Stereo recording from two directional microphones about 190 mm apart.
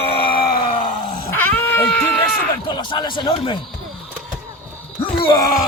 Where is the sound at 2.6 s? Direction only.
25° left (ahead or behind).